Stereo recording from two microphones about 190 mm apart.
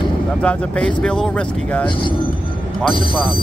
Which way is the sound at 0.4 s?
5° left (ahead or behind).